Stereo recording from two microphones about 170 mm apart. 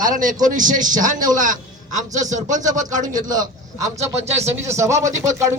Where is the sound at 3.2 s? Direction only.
20° right (ahead or behind).